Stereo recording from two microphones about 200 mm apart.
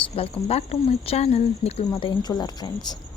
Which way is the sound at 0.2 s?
30° left (ahead or behind).